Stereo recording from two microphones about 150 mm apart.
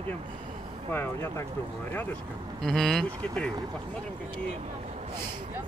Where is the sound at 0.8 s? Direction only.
15° left (ahead or behind).